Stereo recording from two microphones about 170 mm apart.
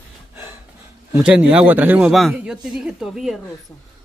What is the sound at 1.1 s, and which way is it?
Speech, 5° right (ahead or behind).